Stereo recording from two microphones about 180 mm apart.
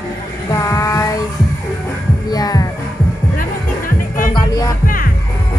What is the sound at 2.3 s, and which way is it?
Music, 20° left (ahead or behind).